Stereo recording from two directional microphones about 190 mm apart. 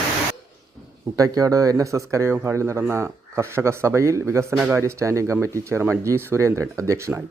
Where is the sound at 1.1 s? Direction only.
20° right (ahead or behind).